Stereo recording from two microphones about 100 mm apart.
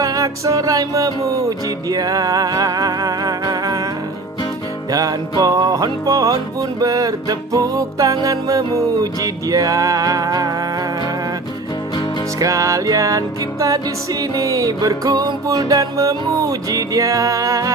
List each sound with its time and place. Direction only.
0.0 s music: 35° right (ahead or behind)
4.9 s music: 35° right (ahead or behind)
12.4 s music: 35° right (ahead or behind)